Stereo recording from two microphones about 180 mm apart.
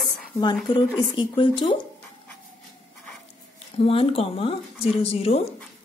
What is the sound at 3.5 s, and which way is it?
Speech, 30° left (ahead or behind).